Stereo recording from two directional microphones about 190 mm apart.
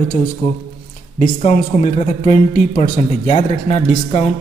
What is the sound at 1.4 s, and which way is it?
Speech, 35° left (ahead or behind).